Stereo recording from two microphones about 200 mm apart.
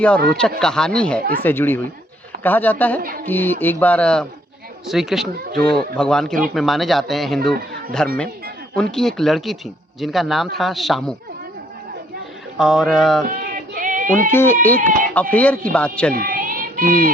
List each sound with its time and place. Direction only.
0.3 s a man's voice: 5° left (ahead or behind)
12.5 s a man's voice: centre (ahead or behind)
13.2 s a sound: 45° right (ahead or behind)
14.3 s speech: 10° left (ahead or behind)
14.8 s speech: 40° right (ahead or behind)
15.1 s speech: 5° left (ahead or behind)
16.1 s child singing: 45° right (ahead or behind)